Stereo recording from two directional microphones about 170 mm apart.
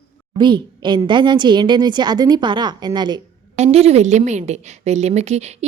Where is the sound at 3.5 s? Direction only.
40° right (ahead or behind).